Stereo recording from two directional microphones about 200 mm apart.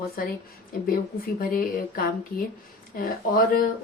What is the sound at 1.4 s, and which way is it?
Speech, 45° left (ahead or behind).